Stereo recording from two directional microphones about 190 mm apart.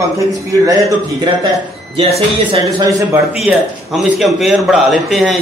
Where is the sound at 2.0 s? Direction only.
30° right (ahead or behind).